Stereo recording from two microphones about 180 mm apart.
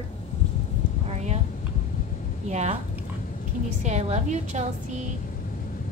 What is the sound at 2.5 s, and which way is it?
Speech, 40° right (ahead or behind).